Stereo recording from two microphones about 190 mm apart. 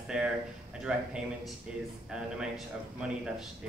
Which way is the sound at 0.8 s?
5° right (ahead or behind).